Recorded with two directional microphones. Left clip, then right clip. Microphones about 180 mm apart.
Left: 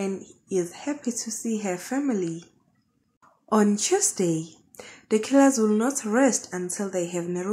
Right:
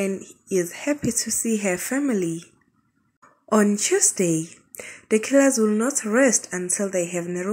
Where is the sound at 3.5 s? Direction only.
10° right (ahead or behind).